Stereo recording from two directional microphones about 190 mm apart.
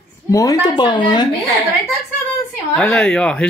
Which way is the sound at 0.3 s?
15° left (ahead or behind).